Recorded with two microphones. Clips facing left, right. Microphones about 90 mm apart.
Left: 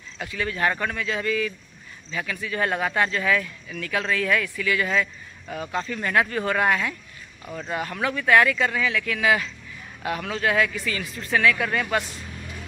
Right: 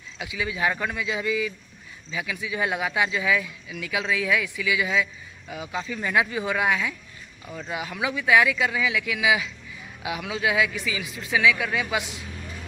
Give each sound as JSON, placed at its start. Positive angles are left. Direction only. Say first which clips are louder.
{"t": 0.2, "sound": "speech", "louder": "left 1 dB", "side_deg": -10}
{"t": 7.4, "sound": "speech", "louder": "left 2 dB", "side_deg": 15}
{"t": 7.7, "sound": "speech", "louder": "left 2 dB", "side_deg": -5}